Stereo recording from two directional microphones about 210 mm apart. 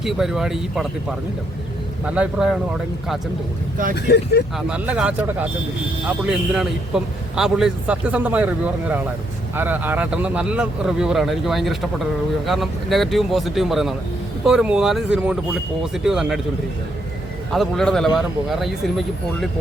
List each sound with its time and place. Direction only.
0.0 s a man's voice: centre (ahead or behind)
2.0 s a man's voice: 5° right (ahead or behind)
3.9 s speech: 50° left (ahead or behind)
4.5 s a man's voice: 5° right (ahead or behind)
17.5 s a man's voice: centre (ahead or behind)